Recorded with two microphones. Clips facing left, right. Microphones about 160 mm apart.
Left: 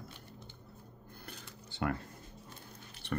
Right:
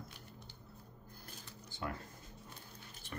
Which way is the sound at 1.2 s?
70° left (ahead or behind).